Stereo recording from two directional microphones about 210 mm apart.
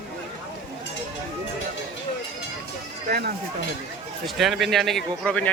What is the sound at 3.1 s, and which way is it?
Speech, 45° right (ahead or behind).